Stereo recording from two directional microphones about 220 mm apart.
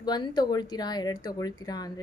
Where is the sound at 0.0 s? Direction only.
20° left (ahead or behind).